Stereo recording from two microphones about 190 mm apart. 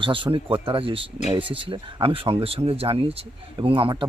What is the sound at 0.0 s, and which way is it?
Speech, 25° right (ahead or behind).